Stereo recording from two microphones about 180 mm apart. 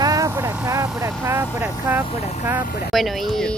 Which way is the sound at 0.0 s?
20° right (ahead or behind).